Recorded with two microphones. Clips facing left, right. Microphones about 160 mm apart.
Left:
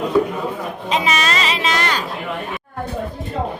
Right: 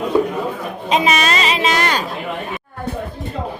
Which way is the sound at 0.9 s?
20° right (ahead or behind).